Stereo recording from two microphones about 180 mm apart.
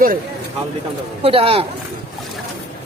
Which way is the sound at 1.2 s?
30° right (ahead or behind).